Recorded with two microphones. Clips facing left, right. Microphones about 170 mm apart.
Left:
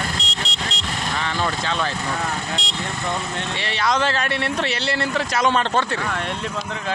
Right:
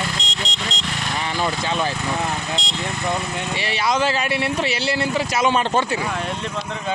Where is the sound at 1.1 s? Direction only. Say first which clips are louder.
Right 1 dB; 15° right (ahead or behind).